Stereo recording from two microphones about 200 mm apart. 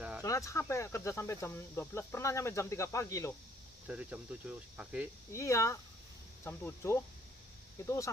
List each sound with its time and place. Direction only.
0.2 s speech: 15° left (ahead or behind)
3.8 s speech: 5° right (ahead or behind)
5.3 s speech: 15° left (ahead or behind)